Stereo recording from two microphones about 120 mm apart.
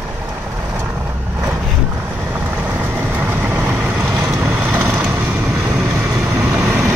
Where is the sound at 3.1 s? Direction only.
15° right (ahead or behind).